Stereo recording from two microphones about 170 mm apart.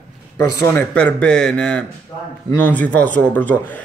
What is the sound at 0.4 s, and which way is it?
Speech, 20° left (ahead or behind).